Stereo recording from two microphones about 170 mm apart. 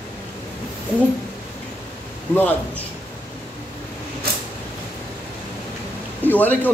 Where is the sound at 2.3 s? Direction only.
10° left (ahead or behind).